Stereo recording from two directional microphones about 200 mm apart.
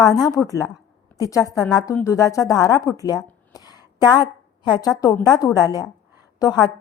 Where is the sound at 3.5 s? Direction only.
20° left (ahead or behind).